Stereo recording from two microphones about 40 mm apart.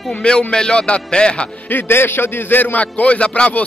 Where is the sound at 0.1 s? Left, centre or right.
Left.